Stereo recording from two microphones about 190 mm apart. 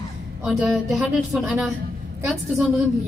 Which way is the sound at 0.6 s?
Centre (ahead or behind).